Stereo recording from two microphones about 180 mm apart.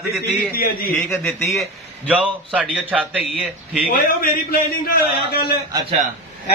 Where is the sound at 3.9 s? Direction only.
55° left (ahead or behind).